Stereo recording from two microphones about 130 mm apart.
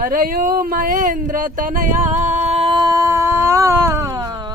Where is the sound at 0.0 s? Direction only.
90° right.